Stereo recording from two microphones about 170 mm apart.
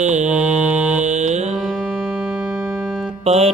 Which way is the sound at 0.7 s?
5° right (ahead or behind).